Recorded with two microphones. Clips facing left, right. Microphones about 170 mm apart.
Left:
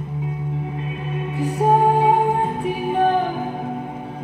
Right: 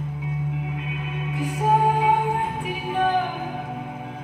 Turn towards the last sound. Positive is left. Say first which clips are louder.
# left 4 dB
turn(degrees=35)  # may be behind; listen again after turning